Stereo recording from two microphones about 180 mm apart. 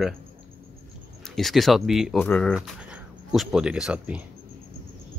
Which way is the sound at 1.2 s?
Centre (ahead or behind).